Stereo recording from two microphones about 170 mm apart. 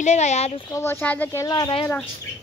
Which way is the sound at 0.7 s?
15° left (ahead or behind).